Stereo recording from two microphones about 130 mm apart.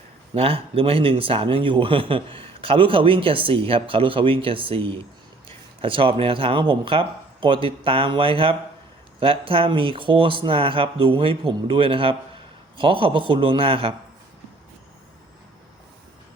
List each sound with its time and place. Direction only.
0.3 s a man's voice: 45° right (ahead or behind)